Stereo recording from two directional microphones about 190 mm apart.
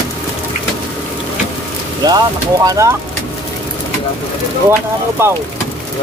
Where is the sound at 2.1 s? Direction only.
20° right (ahead or behind).